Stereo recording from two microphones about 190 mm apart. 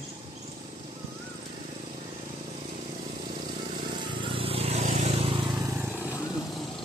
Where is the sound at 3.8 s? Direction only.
25° right (ahead or behind).